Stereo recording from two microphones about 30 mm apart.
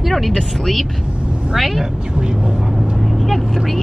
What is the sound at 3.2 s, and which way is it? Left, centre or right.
Speech, centre.